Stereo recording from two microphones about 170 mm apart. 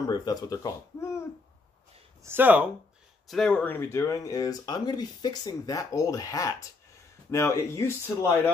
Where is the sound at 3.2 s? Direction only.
5° left (ahead or behind).